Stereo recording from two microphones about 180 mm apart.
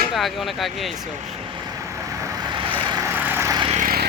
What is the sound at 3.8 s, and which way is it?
Vehicle, 50° right (ahead or behind).